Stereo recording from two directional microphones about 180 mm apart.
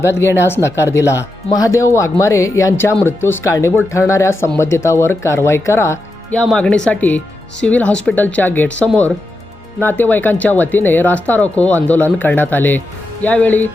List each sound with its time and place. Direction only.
0.0 s speech: 15° left (ahead or behind)